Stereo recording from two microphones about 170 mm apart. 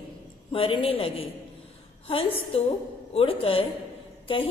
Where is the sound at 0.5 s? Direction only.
30° left (ahead or behind).